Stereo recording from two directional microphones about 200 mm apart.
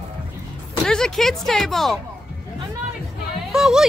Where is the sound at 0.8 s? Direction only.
5° left (ahead or behind).